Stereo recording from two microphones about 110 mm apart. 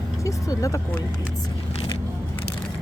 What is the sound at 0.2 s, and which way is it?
Speech, 30° left (ahead or behind).